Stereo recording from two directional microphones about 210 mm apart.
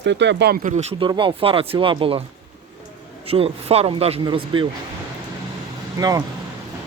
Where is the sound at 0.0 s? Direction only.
55° right (ahead or behind).